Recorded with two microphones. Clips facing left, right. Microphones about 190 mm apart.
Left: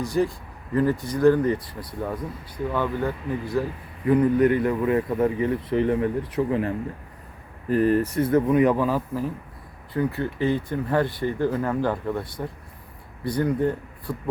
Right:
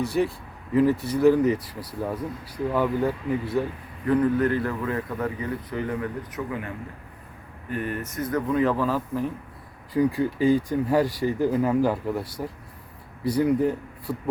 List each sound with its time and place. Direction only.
0.0 s speech: 5° right (ahead or behind)
4.0 s a man's voice: 10° left (ahead or behind)
9.9 s speech: 10° right (ahead or behind)
13.2 s speech: 10° right (ahead or behind)